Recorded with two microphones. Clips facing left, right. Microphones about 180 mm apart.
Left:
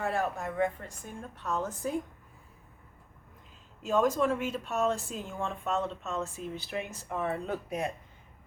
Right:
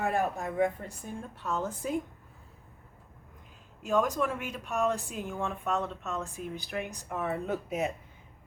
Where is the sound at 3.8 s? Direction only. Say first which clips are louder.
Left 1 dB; centre (ahead or behind).